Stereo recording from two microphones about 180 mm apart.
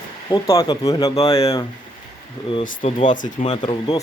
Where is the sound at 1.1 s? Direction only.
35° left (ahead or behind).